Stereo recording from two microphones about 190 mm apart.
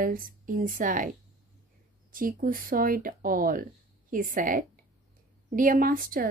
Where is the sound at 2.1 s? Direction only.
45° right (ahead or behind).